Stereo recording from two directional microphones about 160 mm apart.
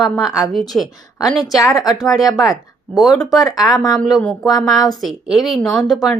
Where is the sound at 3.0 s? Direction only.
Centre (ahead or behind).